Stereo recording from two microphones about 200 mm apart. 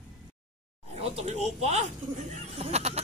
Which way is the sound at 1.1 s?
30° right (ahead or behind).